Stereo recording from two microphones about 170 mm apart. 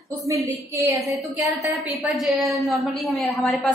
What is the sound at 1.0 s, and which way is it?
Speech, 20° right (ahead or behind).